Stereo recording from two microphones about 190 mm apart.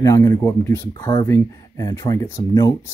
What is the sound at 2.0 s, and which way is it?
Speech, 20° left (ahead or behind).